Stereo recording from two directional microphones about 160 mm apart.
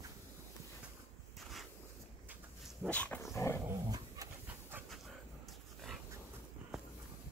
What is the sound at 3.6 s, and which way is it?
Dog, 20° right (ahead or behind).